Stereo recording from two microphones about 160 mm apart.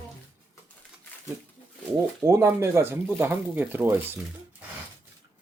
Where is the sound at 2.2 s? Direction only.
15° right (ahead or behind).